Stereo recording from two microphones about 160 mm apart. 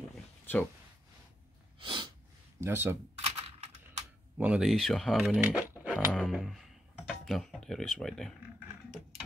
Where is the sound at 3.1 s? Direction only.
40° right (ahead or behind).